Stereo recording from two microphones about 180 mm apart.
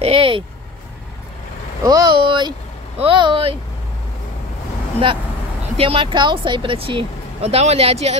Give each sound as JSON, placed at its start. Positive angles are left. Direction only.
{"t": 0.0, "sound": "vehicle", "side_deg": -30}
{"t": 1.8, "sound": "speech", "side_deg": -20}
{"t": 5.8, "sound": "speech", "side_deg": -30}